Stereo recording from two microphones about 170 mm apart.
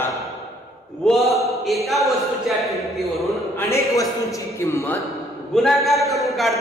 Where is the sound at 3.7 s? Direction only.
20° left (ahead or behind).